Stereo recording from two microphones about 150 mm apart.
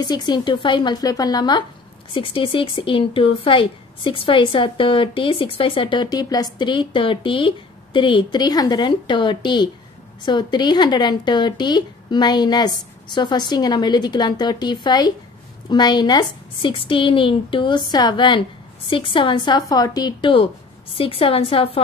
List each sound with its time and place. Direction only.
0.0 s speech: 30° left (ahead or behind)